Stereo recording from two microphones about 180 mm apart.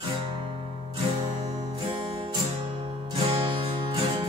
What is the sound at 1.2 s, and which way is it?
Music, 20° right (ahead or behind).